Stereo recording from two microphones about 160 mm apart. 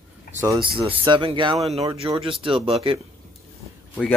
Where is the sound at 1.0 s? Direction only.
30° right (ahead or behind).